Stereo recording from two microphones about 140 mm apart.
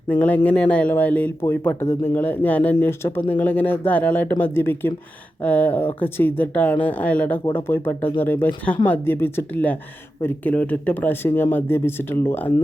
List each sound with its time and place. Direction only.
0.1 s speech: 10° left (ahead or behind)